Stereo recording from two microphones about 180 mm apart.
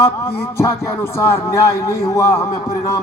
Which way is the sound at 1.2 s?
15° left (ahead or behind).